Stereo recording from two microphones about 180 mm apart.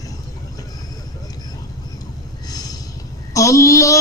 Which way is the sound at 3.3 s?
15° left (ahead or behind).